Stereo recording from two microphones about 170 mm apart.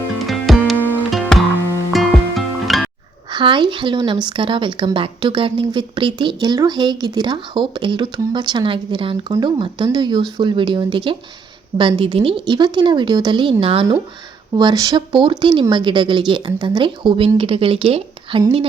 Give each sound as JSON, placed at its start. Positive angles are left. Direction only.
{"t": 0.2, "sound": "music", "side_deg": 0}
{"t": 3.3, "sound": "speech", "side_deg": -30}